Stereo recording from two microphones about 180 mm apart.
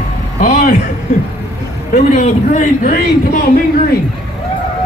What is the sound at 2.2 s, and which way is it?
A man's voice, 45° left (ahead or behind).